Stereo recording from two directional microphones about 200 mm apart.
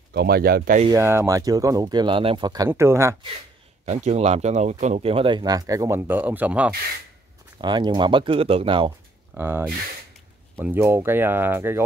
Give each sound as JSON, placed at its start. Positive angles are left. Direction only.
{"t": 0.1, "sound": "speech", "side_deg": -50}
{"t": 0.8, "sound": "speech", "side_deg": -15}
{"t": 3.8, "sound": "speech", "side_deg": -35}
{"t": 7.6, "sound": "speech", "side_deg": -20}
{"t": 9.3, "sound": "speech", "side_deg": -10}